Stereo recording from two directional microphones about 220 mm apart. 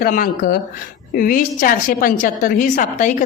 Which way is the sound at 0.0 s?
40° left (ahead or behind).